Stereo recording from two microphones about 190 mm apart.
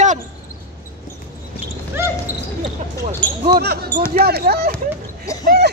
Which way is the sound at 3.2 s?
5° left (ahead or behind).